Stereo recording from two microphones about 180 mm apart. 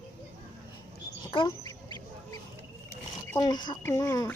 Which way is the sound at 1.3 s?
25° left (ahead or behind).